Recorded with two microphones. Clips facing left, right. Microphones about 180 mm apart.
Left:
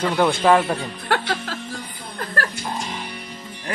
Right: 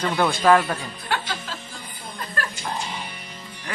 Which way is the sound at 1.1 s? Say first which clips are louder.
Left 5 dB; 65° left (ahead or behind).